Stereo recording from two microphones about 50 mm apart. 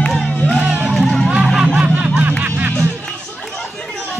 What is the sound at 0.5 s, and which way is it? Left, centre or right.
Music, right.